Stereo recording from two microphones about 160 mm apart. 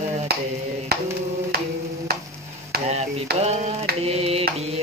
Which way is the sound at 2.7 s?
80° right.